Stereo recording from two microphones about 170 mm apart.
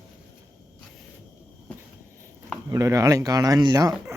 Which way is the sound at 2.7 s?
20° right (ahead or behind).